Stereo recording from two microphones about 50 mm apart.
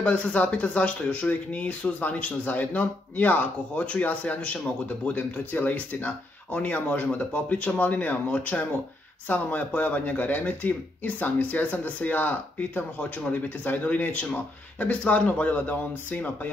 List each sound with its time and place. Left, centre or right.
0.0 s speech: left